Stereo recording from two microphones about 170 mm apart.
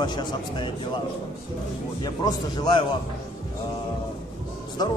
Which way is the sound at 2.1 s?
25° left (ahead or behind).